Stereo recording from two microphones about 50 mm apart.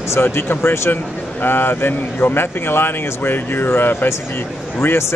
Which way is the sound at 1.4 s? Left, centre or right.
Left.